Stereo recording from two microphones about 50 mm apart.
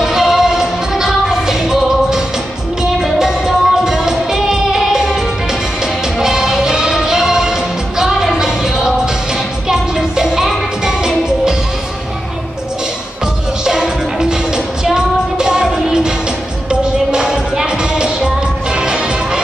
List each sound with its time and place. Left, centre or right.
0.0 s music: centre
13.7 s music: centre
17.1 s music: centre